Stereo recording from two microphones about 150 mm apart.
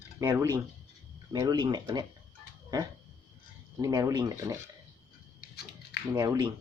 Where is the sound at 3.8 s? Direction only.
25° right (ahead or behind).